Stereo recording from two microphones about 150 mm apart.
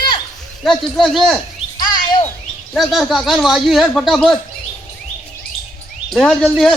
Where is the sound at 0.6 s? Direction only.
Centre (ahead or behind).